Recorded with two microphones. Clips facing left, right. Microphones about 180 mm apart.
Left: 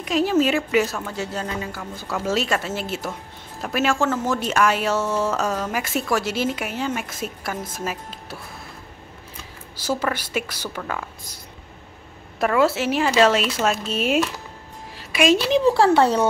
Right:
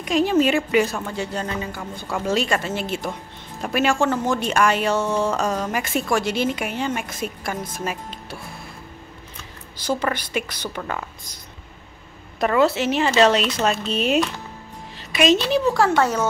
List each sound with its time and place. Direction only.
0.0 s speech: 5° left (ahead or behind)
9.4 s speech: 5° left (ahead or behind)
10.8 s speech: 5° right (ahead or behind)
12.4 s a woman's voice: 5° left (ahead or behind)
15.6 s speech: 30° left (ahead or behind)